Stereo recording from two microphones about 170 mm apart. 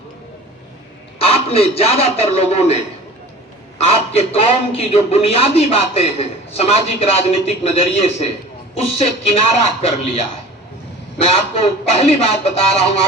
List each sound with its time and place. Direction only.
1.3 s a man's voice: 35° left (ahead or behind)
3.8 s a man's voice: 35° left (ahead or behind)